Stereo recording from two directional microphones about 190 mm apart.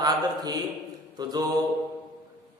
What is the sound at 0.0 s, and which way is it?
Speech, 20° right (ahead or behind).